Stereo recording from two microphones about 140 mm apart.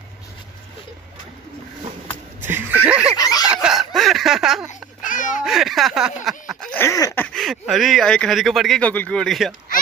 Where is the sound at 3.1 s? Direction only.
25° left (ahead or behind).